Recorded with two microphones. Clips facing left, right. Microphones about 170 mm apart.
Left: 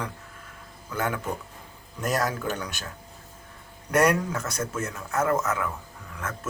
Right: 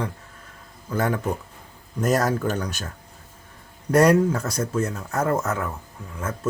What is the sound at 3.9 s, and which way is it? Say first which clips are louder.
Speech: right 6 dB; 35° right (ahead or behind).